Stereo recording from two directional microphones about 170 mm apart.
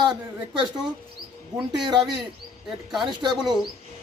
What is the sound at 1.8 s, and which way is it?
Speech, 25° right (ahead or behind).